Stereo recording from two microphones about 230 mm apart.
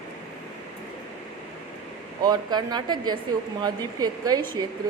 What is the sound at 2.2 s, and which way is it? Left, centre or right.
Speech, centre.